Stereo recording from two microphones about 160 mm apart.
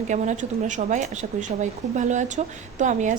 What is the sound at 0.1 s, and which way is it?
A woman's voice, 50° right (ahead or behind).